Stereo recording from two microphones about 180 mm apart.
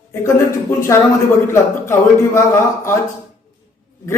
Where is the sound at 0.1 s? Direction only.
15° left (ahead or behind).